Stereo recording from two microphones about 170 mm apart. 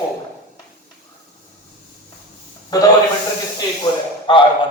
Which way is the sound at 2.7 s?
20° left (ahead or behind).